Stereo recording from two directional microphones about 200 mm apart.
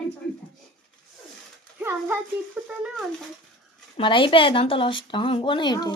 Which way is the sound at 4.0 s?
25° left (ahead or behind).